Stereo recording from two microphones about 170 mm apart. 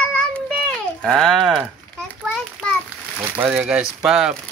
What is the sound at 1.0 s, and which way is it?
Speech, 5° left (ahead or behind).